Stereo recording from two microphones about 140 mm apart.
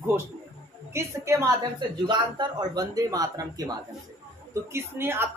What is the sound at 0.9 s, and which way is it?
Speech, 20° right (ahead or behind).